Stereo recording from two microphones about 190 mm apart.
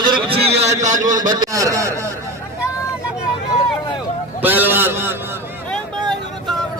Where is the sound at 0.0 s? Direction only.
25° right (ahead or behind).